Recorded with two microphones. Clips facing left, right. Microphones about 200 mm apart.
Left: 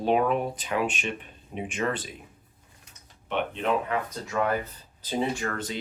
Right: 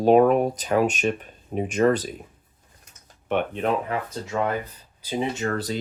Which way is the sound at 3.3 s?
45° right (ahead or behind).